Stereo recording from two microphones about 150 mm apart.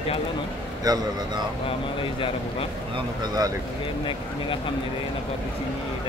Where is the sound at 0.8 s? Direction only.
25° right (ahead or behind).